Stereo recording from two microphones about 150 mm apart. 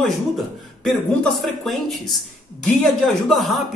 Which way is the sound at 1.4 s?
Centre (ahead or behind).